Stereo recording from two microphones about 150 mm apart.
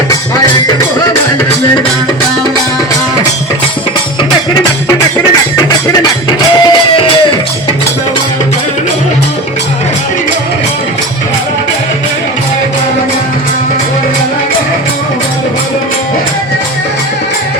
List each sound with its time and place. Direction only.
4.5 s music: 25° left (ahead or behind)